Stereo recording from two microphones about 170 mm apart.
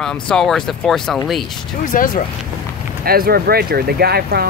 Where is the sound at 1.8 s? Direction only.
55° left (ahead or behind).